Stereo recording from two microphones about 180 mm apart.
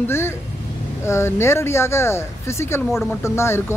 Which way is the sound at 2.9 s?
Centre (ahead or behind).